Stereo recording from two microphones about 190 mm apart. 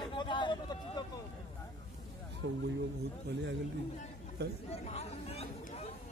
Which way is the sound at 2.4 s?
65° right (ahead or behind).